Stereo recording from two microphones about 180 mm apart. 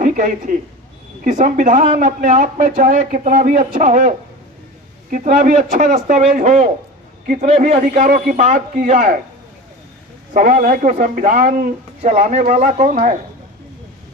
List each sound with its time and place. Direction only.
0.0 s a man's voice: 45° right (ahead or behind)
5.1 s a man's voice: 45° right (ahead or behind)
10.3 s a man's voice: 45° right (ahead or behind)